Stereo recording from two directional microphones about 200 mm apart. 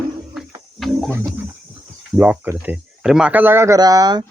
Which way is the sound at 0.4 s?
Centre (ahead or behind).